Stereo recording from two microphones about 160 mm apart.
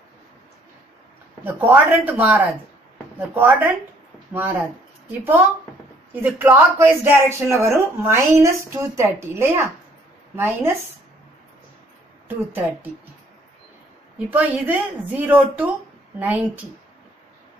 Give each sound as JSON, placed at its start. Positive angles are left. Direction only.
{"t": 1.4, "sound": "speech", "side_deg": -10}
{"t": 6.2, "sound": "speech", "side_deg": -15}
{"t": 12.3, "sound": "speech", "side_deg": -10}
{"t": 14.1, "sound": "speech", "side_deg": -10}